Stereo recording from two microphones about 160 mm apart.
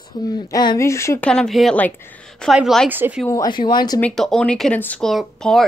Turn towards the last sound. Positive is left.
turn(degrees=0)  # may be behind; listen again after turning